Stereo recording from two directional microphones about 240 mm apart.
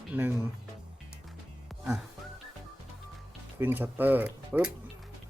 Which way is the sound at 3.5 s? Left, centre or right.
Centre.